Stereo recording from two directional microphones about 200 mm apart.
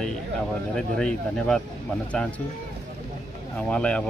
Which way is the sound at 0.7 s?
5° left (ahead or behind).